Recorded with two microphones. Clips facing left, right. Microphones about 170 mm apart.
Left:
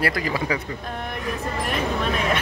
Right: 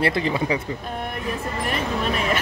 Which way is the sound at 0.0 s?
25° right (ahead or behind).